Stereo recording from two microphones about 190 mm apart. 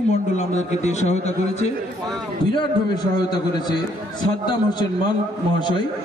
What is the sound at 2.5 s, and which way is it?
A man's voice, 25° left (ahead or behind).